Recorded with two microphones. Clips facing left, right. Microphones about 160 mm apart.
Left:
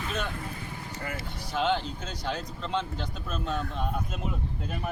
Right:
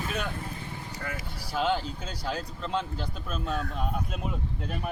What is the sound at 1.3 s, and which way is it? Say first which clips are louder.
A man's voice: even; 5° right (ahead or behind).